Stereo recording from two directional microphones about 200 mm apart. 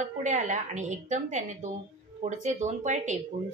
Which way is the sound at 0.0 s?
35° right (ahead or behind).